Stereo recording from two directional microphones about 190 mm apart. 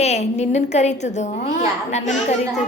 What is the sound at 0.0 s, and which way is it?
A child's voice, 35° left (ahead or behind).